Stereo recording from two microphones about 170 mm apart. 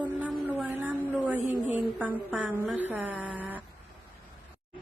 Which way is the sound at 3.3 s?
10° right (ahead or behind).